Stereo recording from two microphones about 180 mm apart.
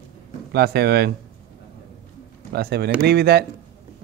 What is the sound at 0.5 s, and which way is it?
Speech, 60° right (ahead or behind).